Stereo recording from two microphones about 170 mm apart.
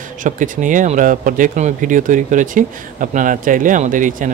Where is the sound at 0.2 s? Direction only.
50° right (ahead or behind).